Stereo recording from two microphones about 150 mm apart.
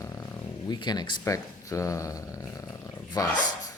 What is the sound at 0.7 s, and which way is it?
Speech, 30° left (ahead or behind).